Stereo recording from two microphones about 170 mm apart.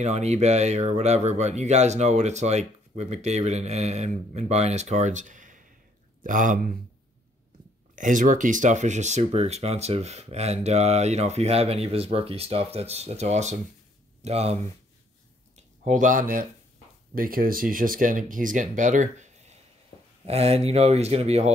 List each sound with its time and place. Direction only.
0.0 s speech: 40° right (ahead or behind)
7.9 s speech: 50° right (ahead or behind)
15.5 s a sound: 50° right (ahead or behind)
17.1 s speech: 55° right (ahead or behind); by 21.5 s 40° right (ahead or behind)